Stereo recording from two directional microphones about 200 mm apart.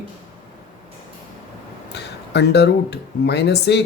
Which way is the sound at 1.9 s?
55° left (ahead or behind).